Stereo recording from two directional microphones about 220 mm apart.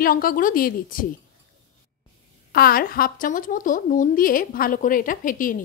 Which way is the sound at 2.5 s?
40° left (ahead or behind).